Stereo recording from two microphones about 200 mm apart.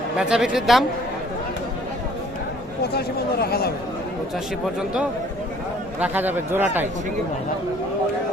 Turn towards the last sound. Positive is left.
turn(degrees=-10)  # may be behind; listen again after turning